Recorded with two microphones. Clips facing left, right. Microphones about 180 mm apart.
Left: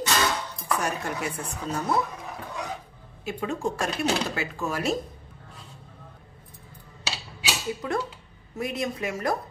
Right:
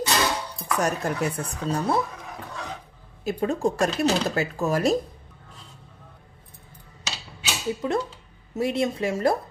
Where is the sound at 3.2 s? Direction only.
40° right (ahead or behind).